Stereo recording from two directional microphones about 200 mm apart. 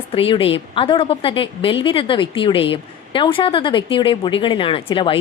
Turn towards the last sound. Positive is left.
turn(degrees=25)  # may be behind; listen again after turning